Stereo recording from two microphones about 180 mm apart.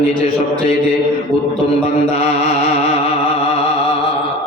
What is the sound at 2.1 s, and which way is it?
Chant, 35° left (ahead or behind).